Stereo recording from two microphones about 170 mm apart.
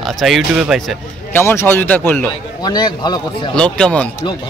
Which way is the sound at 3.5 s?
5° left (ahead or behind).